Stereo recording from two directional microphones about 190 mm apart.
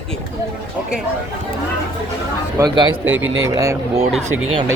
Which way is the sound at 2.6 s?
15° right (ahead or behind).